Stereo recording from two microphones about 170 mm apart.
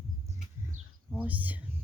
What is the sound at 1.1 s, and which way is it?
Speech, 10° right (ahead or behind).